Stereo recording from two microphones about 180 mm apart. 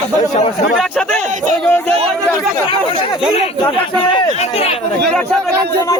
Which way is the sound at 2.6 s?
30° left (ahead or behind).